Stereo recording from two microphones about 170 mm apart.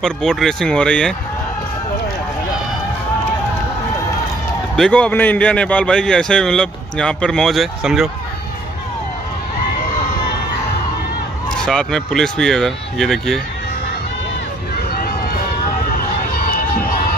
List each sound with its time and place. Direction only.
0.0 s a man's voice: 5° left (ahead or behind)
4.7 s a man's voice: 5° left (ahead or behind)
11.6 s a man's voice: 5° left (ahead or behind)
14.9 s run: 60° left (ahead or behind)
16.0 s crowd: 55° left (ahead or behind)